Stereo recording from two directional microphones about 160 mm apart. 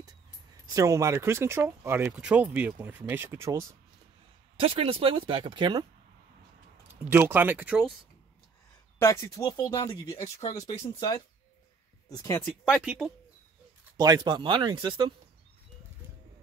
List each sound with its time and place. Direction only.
0.7 s speech: 20° right (ahead or behind)
4.6 s speech: 35° right (ahead or behind)
7.1 s speech: 10° right (ahead or behind)
8.9 s speech: 20° left (ahead or behind)
12.4 s speech: centre (ahead or behind)
13.9 s speech: 25° right (ahead or behind)